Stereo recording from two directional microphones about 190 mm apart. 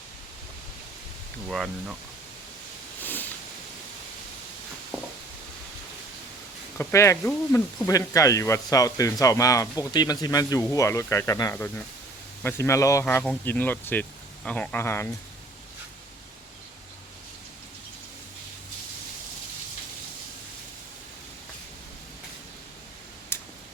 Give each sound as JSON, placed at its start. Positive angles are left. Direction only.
{"t": 1.5, "sound": "speech", "side_deg": 0}
{"t": 3.0, "sound": "a sound", "side_deg": 10}
{"t": 6.7, "sound": "speech", "side_deg": 15}
{"t": 23.3, "sound": "tick", "side_deg": 10}